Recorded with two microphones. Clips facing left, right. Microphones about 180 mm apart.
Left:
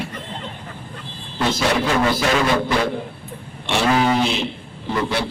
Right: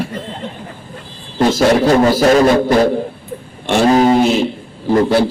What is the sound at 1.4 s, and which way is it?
A man's voice, 45° right (ahead or behind).